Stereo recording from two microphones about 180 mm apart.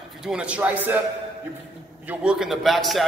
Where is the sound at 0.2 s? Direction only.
5° right (ahead or behind).